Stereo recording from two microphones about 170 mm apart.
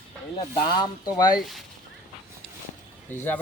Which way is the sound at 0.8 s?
20° left (ahead or behind).